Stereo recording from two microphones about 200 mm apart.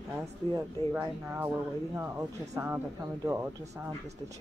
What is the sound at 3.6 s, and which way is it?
Speech, 35° right (ahead or behind).